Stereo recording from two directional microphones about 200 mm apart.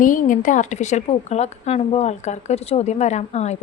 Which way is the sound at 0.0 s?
40° left (ahead or behind).